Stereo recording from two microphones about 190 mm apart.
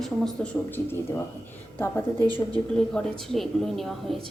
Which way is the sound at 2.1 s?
20° right (ahead or behind).